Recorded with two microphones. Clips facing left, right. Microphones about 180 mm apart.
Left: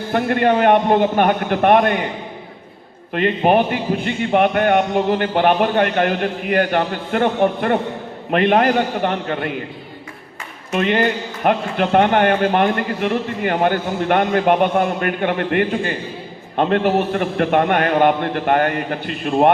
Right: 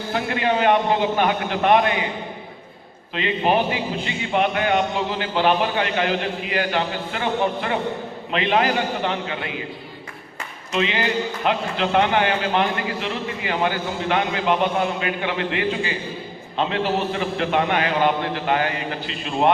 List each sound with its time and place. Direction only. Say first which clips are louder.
0.1 s a man's voice: left 6 dB; 55° left (ahead or behind)
3.1 s a man's voice: left 5 dB; 55° left (ahead or behind)
10.7 s a man's voice: left 5 dB; 55° left (ahead or behind)